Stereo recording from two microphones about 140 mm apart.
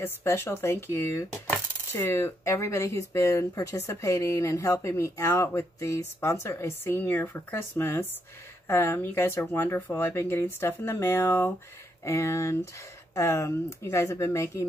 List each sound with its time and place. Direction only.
0.0 s chopping: 15° left (ahead or behind)
8.6 s speech: 15° left (ahead or behind)
12.0 s chopping: 20° left (ahead or behind)